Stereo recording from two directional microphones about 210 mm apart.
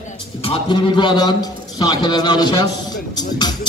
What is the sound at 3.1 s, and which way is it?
Music, 20° left (ahead or behind).